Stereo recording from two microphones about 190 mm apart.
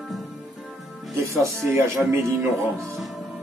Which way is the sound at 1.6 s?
15° right (ahead or behind).